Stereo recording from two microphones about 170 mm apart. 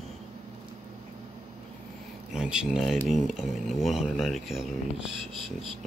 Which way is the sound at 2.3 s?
5° right (ahead or behind).